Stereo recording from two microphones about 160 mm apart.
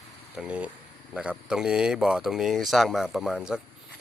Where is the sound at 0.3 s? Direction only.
10° right (ahead or behind).